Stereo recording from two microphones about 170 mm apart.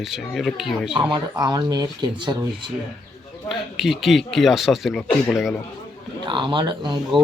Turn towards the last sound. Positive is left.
turn(degrees=-25)  # may be behind; listen again after turning